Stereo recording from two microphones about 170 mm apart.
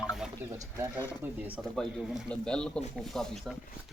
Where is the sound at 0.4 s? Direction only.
10° right (ahead or behind).